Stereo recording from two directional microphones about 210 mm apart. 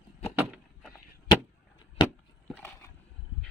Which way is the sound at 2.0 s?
20° left (ahead or behind).